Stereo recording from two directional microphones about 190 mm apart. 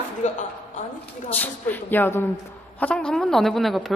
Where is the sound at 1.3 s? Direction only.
10° left (ahead or behind).